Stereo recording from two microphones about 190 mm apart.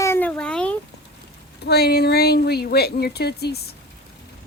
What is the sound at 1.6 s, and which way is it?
Speech, 60° left (ahead or behind).